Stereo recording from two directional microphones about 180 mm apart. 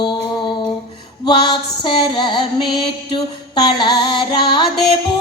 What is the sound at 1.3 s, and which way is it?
Music, 25° left (ahead or behind).